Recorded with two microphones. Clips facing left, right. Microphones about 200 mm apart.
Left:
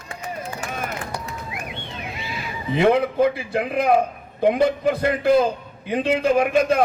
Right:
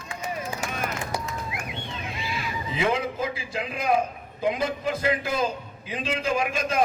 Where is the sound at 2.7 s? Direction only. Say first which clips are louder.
Left 9 dB; 60° left (ahead or behind).